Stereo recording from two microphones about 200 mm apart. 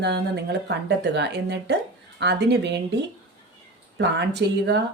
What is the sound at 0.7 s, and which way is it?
A woman's voice, 55° right (ahead or behind).